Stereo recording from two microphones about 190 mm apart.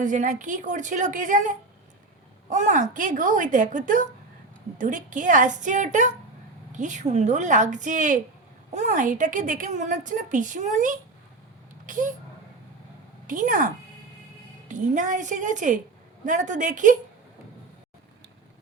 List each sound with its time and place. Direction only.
0.0 s a woman's voice: 40° right (ahead or behind)
13.2 s a woman's voice: 45° right (ahead or behind)
14.7 s a woman's voice: 40° right (ahead or behind)